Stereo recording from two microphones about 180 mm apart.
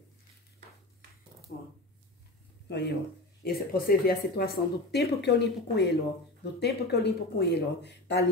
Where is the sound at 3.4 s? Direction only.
55° left (ahead or behind).